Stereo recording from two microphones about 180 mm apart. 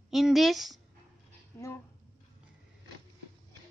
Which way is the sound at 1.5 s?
15° left (ahead or behind).